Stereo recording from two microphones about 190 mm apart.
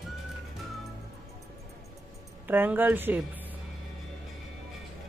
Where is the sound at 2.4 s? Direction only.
10° right (ahead or behind).